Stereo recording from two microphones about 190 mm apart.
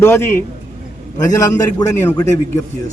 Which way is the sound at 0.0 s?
10° left (ahead or behind).